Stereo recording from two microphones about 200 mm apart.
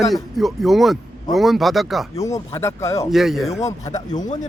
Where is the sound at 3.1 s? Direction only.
Centre (ahead or behind).